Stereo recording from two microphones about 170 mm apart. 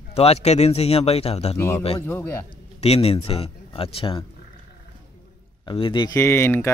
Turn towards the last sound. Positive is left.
turn(degrees=15)  # may be behind; listen again after turning